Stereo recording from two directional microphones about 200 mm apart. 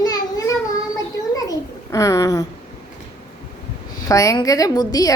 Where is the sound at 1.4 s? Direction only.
15° left (ahead or behind).